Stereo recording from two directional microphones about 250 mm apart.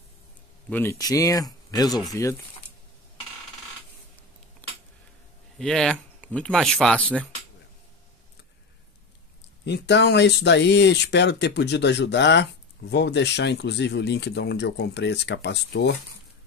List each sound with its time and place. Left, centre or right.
0.7 s speech: centre
5.6 s speech: centre
9.7 s speech: left